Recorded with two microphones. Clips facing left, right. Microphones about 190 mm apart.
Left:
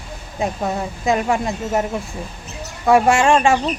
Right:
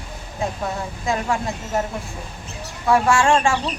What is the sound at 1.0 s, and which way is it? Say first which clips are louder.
Speech: left 4 dB; 20° left (ahead or behind).